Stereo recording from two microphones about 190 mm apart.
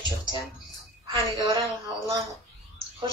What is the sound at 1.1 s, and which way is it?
A woman's voice, 25° right (ahead or behind).